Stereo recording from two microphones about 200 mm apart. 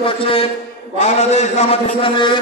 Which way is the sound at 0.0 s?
25° left (ahead or behind).